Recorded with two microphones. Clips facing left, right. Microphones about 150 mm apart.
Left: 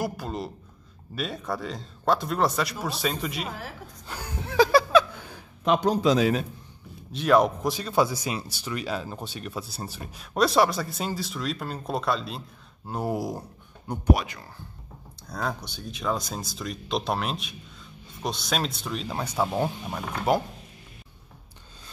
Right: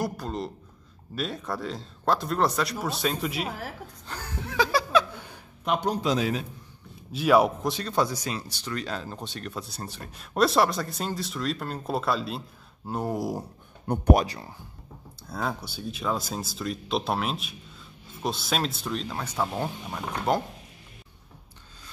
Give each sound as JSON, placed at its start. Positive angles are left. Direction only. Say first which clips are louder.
{"t": 0.0, "sound": "speech", "louder": "even", "side_deg": 5}
{"t": 4.1, "sound": "chuckle", "louder": "left 1 dB", "side_deg": 10}
{"t": 4.6, "sound": "chuckle", "louder": "left 6 dB", "side_deg": 35}
{"t": 5.7, "sound": "a man's voice", "louder": "left 4 dB", "side_deg": 90}
{"t": 7.1, "sound": "speech", "louder": "even", "side_deg": -5}
{"t": 13.8, "sound": "speech", "louder": "right 2 dB", "side_deg": -60}
{"t": 14.2, "sound": "speech", "louder": "right 6 dB", "side_deg": -35}
{"t": 15.2, "sound": "speech", "louder": "even", "side_deg": -5}
{"t": 19.0, "sound": "speech", "louder": "left 2 dB", "side_deg": 15}